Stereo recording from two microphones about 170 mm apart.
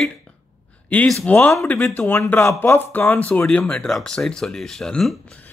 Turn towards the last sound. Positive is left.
turn(degrees=5)  # may be behind; listen again after turning